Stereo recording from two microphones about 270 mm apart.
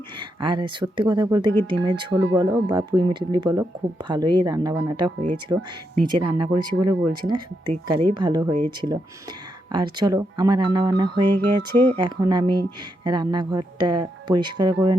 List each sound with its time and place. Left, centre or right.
0.2 s speech: centre
9.7 s speech: centre